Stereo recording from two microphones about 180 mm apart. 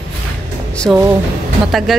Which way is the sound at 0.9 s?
Centre (ahead or behind).